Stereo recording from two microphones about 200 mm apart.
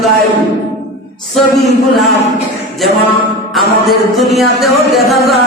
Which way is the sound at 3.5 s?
Centre (ahead or behind).